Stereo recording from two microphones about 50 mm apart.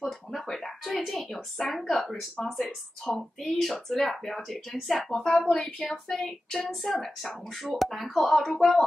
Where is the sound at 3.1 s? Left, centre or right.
Centre.